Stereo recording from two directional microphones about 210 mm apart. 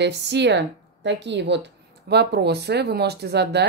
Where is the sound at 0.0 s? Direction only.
55° right (ahead or behind).